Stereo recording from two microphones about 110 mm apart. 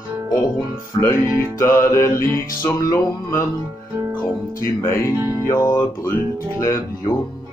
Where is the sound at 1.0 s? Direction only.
25° left (ahead or behind).